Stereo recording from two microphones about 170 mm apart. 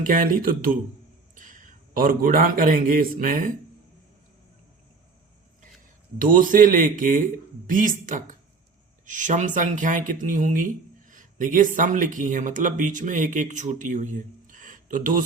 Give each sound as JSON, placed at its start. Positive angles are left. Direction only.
{"t": 0.0, "sound": "a man's voice", "side_deg": -55}
{"t": 6.1, "sound": "speech", "side_deg": -55}